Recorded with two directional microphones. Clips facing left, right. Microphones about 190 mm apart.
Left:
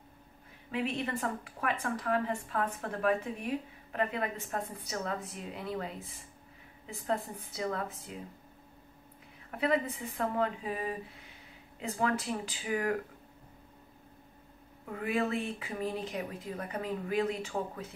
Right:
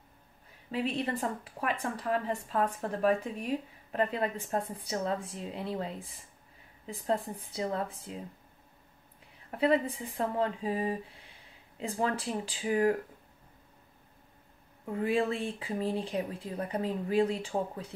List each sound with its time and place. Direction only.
0.7 s speech: 35° right (ahead or behind)
6.9 s speech: 30° right (ahead or behind)
9.6 s speech: 30° right (ahead or behind)
14.9 s speech: 30° right (ahead or behind)